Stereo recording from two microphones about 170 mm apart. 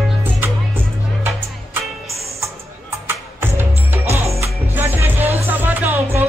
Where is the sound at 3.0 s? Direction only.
15° right (ahead or behind).